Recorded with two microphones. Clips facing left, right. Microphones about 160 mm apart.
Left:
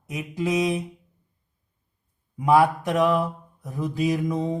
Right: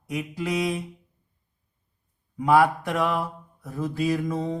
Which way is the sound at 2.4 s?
20° left (ahead or behind).